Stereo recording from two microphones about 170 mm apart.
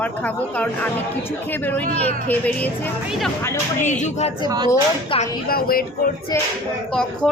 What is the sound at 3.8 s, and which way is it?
Speech, 45° left (ahead or behind).